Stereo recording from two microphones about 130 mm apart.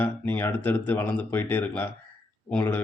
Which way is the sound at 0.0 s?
15° left (ahead or behind).